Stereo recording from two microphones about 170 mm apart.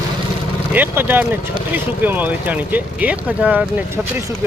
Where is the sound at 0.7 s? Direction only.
10° right (ahead or behind).